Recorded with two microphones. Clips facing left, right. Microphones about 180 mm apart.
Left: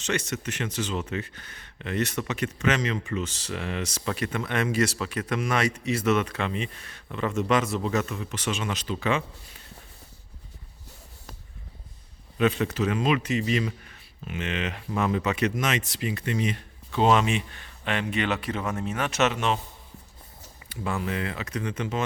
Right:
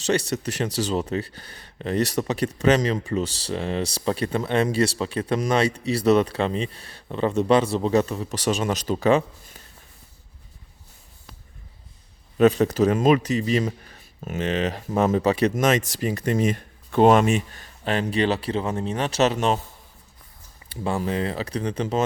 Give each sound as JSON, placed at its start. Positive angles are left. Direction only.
{"t": 0.0, "sound": "speech", "side_deg": -35}
{"t": 12.4, "sound": "speech", "side_deg": -40}
{"t": 20.7, "sound": "speech", "side_deg": -30}